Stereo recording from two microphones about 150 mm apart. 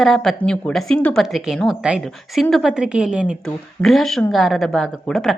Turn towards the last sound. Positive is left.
turn(degrees=0)  # may be behind; listen again after turning